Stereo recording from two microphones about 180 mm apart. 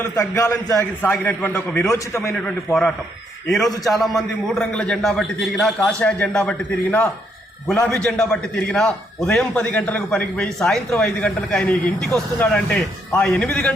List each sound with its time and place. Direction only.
0.0 s a man's voice: 15° left (ahead or behind)
3.8 s a man's voice: centre (ahead or behind)